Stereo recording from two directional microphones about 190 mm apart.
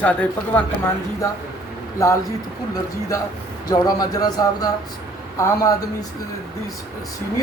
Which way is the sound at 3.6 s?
20° left (ahead or behind).